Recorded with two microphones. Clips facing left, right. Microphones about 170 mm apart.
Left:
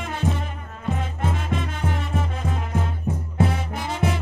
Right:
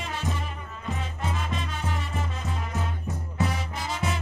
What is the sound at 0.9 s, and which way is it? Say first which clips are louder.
Music: left 4 dB; 55° left (ahead or behind).